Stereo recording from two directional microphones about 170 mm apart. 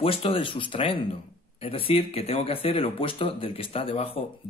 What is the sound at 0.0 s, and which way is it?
Speech, 35° left (ahead or behind).